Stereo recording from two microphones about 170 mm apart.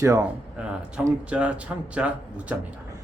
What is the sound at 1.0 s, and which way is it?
Speech, 5° right (ahead or behind).